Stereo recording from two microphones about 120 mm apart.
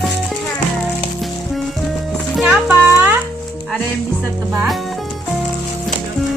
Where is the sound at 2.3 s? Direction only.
Centre (ahead or behind).